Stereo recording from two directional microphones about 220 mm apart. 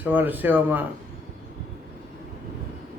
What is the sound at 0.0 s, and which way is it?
Speech, 10° right (ahead or behind).